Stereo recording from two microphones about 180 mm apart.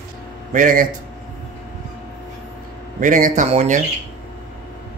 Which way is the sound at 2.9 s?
45° right (ahead or behind).